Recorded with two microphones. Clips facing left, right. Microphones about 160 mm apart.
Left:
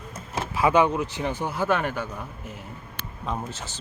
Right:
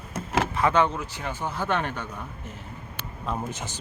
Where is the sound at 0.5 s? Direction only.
10° left (ahead or behind).